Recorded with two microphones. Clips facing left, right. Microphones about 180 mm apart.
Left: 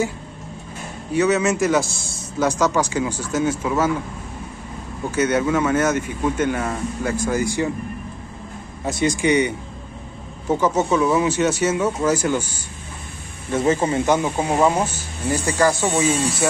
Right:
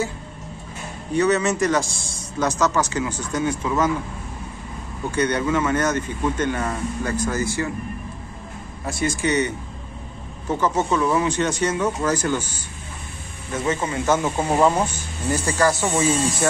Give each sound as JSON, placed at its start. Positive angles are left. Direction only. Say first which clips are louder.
{"t": 1.1, "sound": "a man's voice", "louder": "left 1 dB", "side_deg": 5}
{"t": 5.1, "sound": "a man's voice", "louder": "left 2 dB", "side_deg": 5}
{"t": 8.8, "sound": "a man's voice", "louder": "left 4 dB", "side_deg": 20}
{"t": 10.5, "sound": "a man's voice", "louder": "left 3 dB", "side_deg": 10}
{"t": 13.5, "sound": "speech", "louder": "left 5 dB", "side_deg": 30}
{"t": 14.0, "sound": "a man's voice", "louder": "left 1 dB", "side_deg": 15}